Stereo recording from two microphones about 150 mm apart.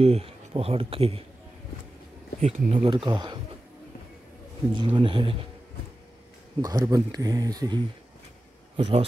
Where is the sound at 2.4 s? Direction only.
60° right (ahead or behind).